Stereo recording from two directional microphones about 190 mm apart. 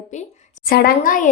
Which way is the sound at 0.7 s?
50° left (ahead or behind).